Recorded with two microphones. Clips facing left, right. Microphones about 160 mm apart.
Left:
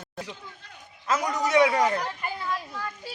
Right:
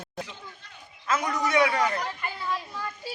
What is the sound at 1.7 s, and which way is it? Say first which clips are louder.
Speech: left 2 dB; 20° left (ahead or behind).